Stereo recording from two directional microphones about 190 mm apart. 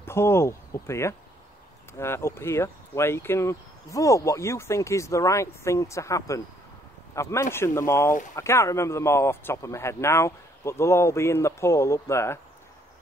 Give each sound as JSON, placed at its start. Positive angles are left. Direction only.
{"t": 0.0, "sound": "speech", "side_deg": 15}